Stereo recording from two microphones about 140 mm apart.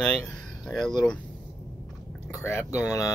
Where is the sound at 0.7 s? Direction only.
5° left (ahead or behind).